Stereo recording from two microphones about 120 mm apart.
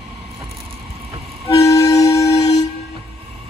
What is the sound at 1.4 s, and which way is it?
Vehicle, 25° left (ahead or behind).